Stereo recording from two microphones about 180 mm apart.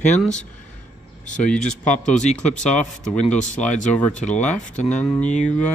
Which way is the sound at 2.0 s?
40° left (ahead or behind).